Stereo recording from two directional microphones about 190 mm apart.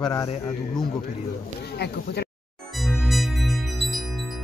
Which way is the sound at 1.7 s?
60° left (ahead or behind).